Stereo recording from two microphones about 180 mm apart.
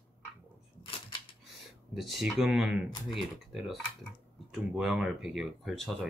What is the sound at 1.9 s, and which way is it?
Speech, centre (ahead or behind).